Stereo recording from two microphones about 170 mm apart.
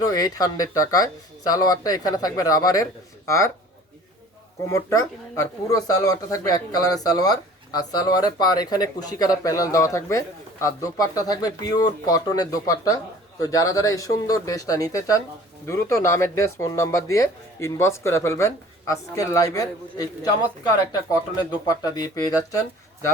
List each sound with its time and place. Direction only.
0.0 s speech: 20° left (ahead or behind)
4.7 s speech: 15° left (ahead or behind)